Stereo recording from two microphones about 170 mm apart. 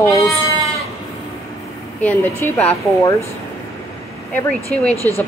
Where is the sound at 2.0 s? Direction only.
10° left (ahead or behind).